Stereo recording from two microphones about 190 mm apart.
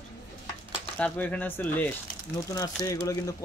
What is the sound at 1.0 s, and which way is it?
Speech, 10° left (ahead or behind).